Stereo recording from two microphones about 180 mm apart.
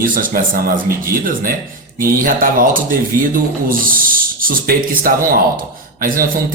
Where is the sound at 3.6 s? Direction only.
50° right (ahead or behind).